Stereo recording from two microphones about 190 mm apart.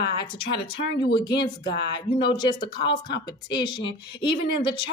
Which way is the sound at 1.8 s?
60° left (ahead or behind).